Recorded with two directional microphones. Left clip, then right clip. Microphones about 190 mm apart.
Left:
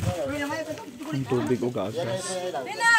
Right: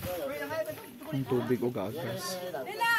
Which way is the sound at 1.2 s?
10° right (ahead or behind).